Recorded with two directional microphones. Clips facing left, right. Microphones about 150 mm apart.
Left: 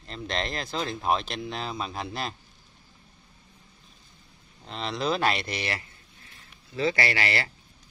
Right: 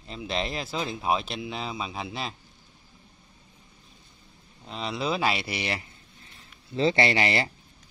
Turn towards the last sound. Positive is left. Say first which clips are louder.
# right 4 dB
turn(degrees=-20)  # may be behind; listen again after turning